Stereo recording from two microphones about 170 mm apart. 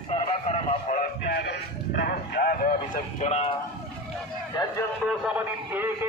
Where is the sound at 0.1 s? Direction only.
35° left (ahead or behind).